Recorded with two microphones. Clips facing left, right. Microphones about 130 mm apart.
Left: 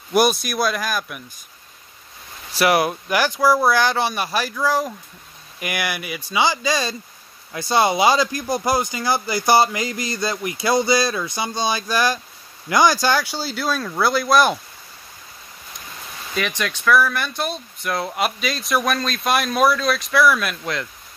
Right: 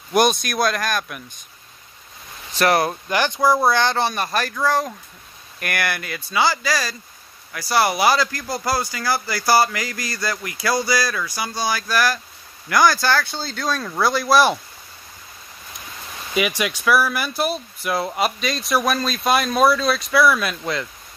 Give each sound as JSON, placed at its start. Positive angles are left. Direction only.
{"t": 0.1, "sound": "speech", "side_deg": 5}
{"t": 2.5, "sound": "speech", "side_deg": 10}
{"t": 3.4, "sound": "speech", "side_deg": -20}
{"t": 3.7, "sound": "speech", "side_deg": 10}
{"t": 16.3, "sound": "speech", "side_deg": -10}